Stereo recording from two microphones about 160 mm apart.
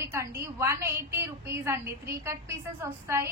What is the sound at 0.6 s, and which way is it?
A woman's voice, 15° right (ahead or behind).